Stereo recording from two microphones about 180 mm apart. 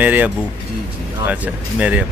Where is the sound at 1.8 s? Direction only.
10° right (ahead or behind).